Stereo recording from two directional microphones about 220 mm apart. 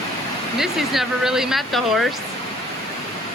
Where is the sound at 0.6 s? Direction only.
Centre (ahead or behind).